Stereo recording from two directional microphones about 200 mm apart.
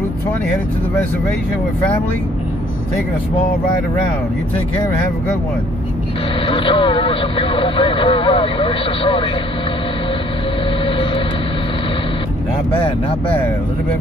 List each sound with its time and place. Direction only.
6.4 s speech: 25° left (ahead or behind)
12.7 s speech: 30° left (ahead or behind)